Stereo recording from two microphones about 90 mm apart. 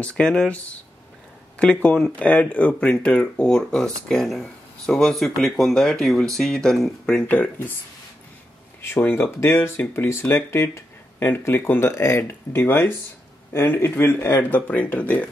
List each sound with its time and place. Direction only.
0.0 s speech: 10° left (ahead or behind)
8.8 s speech: 25° left (ahead or behind)